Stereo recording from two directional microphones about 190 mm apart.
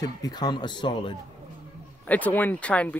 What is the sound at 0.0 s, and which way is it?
Speech, 20° left (ahead or behind).